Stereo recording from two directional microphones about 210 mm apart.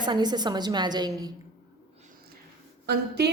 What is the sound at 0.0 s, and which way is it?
A woman's voice, 20° right (ahead or behind).